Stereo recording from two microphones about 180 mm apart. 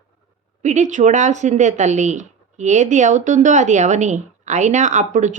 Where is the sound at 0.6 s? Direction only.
40° right (ahead or behind).